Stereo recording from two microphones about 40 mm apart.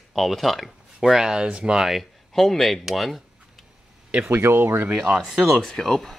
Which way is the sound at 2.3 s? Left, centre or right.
Centre.